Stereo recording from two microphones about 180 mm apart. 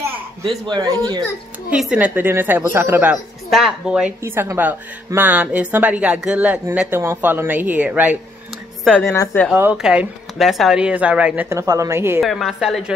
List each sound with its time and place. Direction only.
0.5 s speech: 25° right (ahead or behind)
1.7 s a woman's voice: 5° right (ahead or behind)
8.8 s a woman's voice: 10° left (ahead or behind)
9.5 s a woman's voice: 5° right (ahead or behind)
12.2 s a woman's voice: centre (ahead or behind)